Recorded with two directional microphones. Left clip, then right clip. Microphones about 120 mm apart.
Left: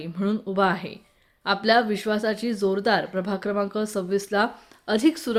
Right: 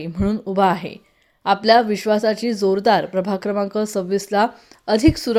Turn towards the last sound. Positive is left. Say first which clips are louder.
# right 5 dB
turn(degrees=-45)  # may be behind; listen again after turning